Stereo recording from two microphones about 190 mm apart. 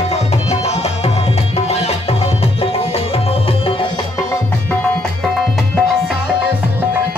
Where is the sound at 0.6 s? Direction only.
35° left (ahead or behind).